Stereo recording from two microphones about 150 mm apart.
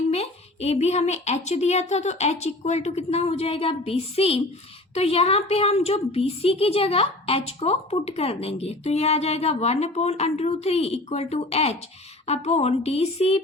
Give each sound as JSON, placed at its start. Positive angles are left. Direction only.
{"t": 0.1, "sound": "a woman's voice", "side_deg": 45}